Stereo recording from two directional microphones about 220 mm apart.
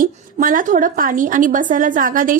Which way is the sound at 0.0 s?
40° right (ahead or behind).